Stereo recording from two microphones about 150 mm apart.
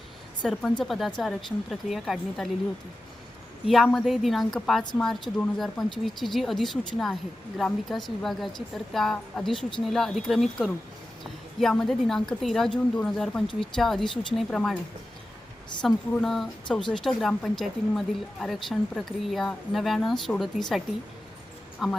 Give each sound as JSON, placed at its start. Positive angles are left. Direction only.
{"t": 0.4, "sound": "a woman's voice", "side_deg": 5}
{"t": 3.7, "sound": "a woman's voice", "side_deg": 0}
{"t": 15.8, "sound": "a woman's voice", "side_deg": 0}